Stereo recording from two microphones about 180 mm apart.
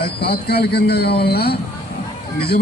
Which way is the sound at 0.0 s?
60° left (ahead or behind).